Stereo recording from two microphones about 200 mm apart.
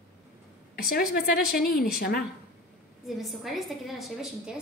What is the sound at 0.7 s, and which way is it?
A woman's voice, 50° left (ahead or behind).